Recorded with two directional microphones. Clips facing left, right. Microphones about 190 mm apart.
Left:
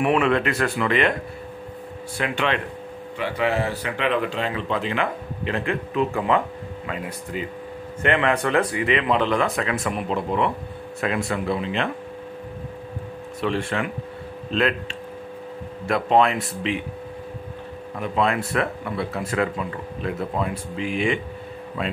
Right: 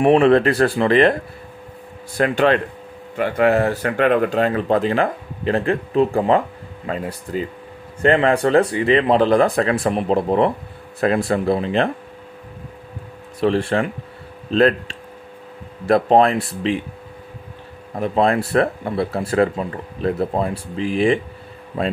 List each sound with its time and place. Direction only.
0.0 s speech: 30° right (ahead or behind)
2.1 s speech: 40° right (ahead or behind)
13.4 s speech: 35° right (ahead or behind)
17.9 s speech: 35° right (ahead or behind)